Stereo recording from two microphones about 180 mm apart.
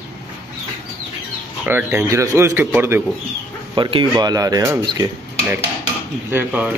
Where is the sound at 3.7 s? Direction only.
25° right (ahead or behind).